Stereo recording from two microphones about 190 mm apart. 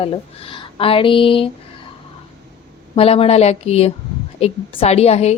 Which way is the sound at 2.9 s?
30° left (ahead or behind).